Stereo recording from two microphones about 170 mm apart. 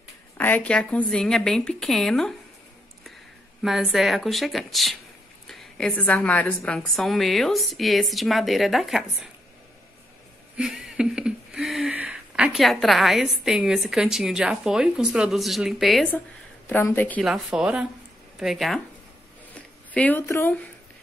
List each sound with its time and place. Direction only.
0.4 s a woman's voice: 10° left (ahead or behind)
3.6 s a woman's voice: centre (ahead or behind)
10.5 s a sound: 5° right (ahead or behind)
16.6 s a woman's voice: 10° left (ahead or behind)
17.2 s a woman's voice: 5° right (ahead or behind)
19.9 s a woman's voice: 10° left (ahead or behind)